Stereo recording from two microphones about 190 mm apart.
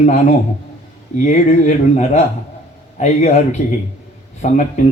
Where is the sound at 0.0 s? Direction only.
35° left (ahead or behind).